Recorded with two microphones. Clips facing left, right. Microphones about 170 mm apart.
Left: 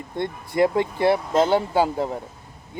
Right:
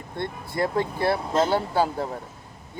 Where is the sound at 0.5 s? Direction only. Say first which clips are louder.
Left 5 dB; 20° left (ahead or behind).